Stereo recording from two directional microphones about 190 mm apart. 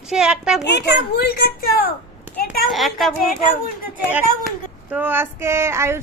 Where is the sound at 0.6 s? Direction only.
65° left (ahead or behind).